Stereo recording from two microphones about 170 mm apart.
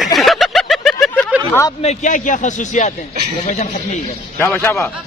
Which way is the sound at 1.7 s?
45° left (ahead or behind).